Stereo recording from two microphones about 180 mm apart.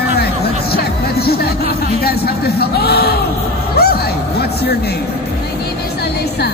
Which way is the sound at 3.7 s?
60° left (ahead or behind).